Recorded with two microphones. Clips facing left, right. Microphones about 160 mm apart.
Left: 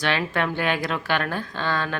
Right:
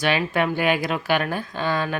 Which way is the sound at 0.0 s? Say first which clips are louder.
Right 3 dB; 10° right (ahead or behind).